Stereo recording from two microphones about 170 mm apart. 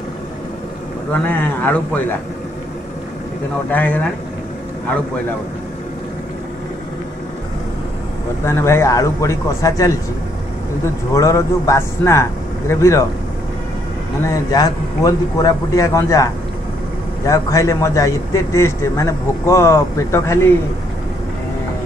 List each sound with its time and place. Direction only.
1.1 s a man's voice: 10° left (ahead or behind)
3.7 s a man's voice: 10° left (ahead or behind)
8.5 s a man's voice: 15° left (ahead or behind)
11.1 s a man's voice: 20° left (ahead or behind)
14.2 s a man's voice: 20° left (ahead or behind)
17.3 s a man's voice: 20° left (ahead or behind)